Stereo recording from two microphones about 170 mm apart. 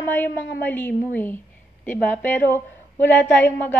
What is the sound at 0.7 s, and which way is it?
A woman's voice, 10° left (ahead or behind).